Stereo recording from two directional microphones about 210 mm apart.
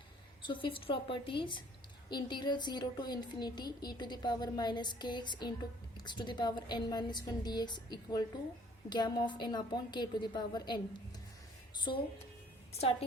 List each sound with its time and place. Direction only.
0.4 s speech: 25° left (ahead or behind)
11.9 s speech: 20° left (ahead or behind)